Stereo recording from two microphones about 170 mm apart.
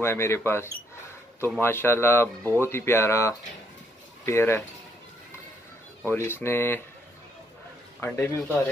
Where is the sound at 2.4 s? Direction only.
15° right (ahead or behind).